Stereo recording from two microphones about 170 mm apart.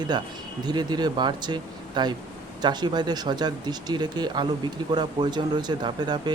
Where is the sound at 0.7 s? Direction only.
25° right (ahead or behind).